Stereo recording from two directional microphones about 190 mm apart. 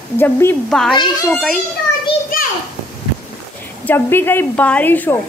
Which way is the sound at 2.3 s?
50° left (ahead or behind).